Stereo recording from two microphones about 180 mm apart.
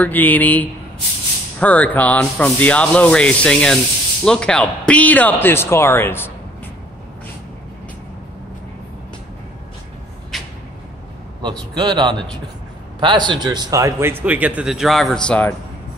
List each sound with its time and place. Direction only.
0.0 s rub: 10° left (ahead or behind)
10.3 s a sound: centre (ahead or behind)
11.7 s a man's voice: 25° right (ahead or behind); by 15.5 s 5° left (ahead or behind)